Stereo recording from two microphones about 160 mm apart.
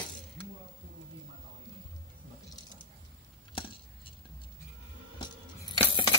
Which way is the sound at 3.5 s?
35° left (ahead or behind).